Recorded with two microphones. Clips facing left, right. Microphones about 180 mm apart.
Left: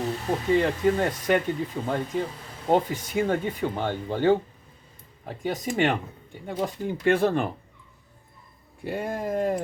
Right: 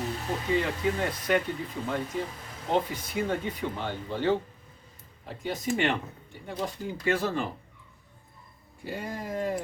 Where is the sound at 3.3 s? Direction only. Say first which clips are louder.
Left 5 dB; 45° left (ahead or behind).